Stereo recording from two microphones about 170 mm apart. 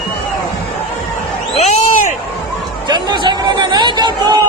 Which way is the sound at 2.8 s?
25° right (ahead or behind).